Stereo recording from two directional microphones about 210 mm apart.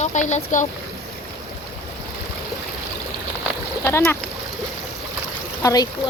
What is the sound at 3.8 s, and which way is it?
Speech, 10° left (ahead or behind).